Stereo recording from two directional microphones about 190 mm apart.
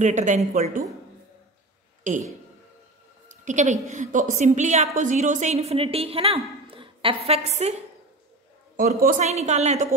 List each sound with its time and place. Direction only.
0.0 s a woman's voice: 40° right (ahead or behind)
2.1 s a woman's voice: 40° right (ahead or behind)
3.3 s a woman's voice: 40° right (ahead or behind)
8.7 s a woman's voice: 45° right (ahead or behind)